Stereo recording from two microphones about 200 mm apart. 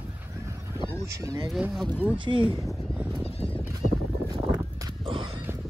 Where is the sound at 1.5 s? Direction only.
Centre (ahead or behind).